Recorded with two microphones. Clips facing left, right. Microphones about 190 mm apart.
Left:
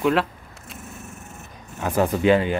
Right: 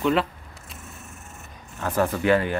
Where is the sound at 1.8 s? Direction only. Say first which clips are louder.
Left 3 dB; 15° left (ahead or behind).